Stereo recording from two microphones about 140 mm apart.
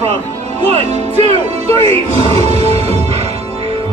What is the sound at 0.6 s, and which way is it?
Speech, 50° right (ahead or behind).